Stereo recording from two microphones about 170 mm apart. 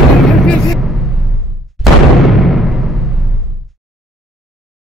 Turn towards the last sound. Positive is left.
turn(degrees=0)  # may be behind; listen again after turning